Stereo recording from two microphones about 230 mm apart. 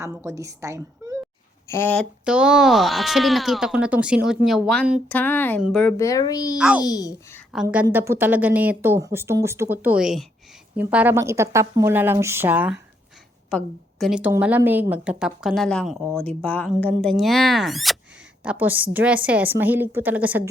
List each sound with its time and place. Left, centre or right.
0.0 s a woman's voice: centre
1.7 s speech: centre
2.2 s a woman's voice: centre
6.0 s speech: centre
6.6 s a woman's voice: centre
6.8 s speech: centre
7.5 s a woman's voice: centre